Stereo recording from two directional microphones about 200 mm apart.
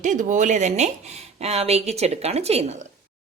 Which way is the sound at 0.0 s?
40° right (ahead or behind).